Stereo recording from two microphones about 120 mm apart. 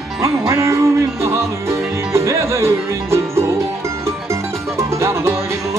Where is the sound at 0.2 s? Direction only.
25° right (ahead or behind).